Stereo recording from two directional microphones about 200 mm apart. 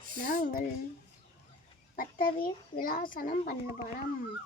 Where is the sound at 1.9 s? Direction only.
45° left (ahead or behind).